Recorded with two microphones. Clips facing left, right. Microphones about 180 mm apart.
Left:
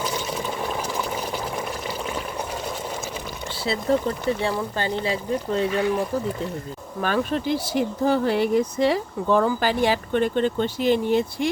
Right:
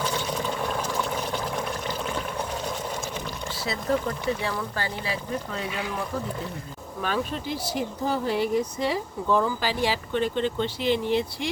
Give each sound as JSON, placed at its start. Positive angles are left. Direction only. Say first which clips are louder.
{"t": 0.0, "sound": "a sound", "louder": "left 1 dB", "side_deg": 5}
{"t": 3.6, "sound": "speech", "louder": "left 4 dB", "side_deg": 30}
{"t": 7.0, "sound": "speech", "louder": "left 5 dB", "side_deg": 60}